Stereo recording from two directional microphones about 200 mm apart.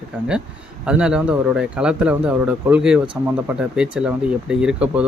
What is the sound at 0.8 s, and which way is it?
Speech, 5° right (ahead or behind).